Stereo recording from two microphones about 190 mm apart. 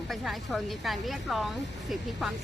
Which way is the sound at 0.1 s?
Centre (ahead or behind).